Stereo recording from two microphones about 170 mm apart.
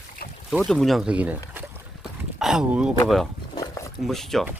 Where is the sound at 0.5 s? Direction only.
Centre (ahead or behind).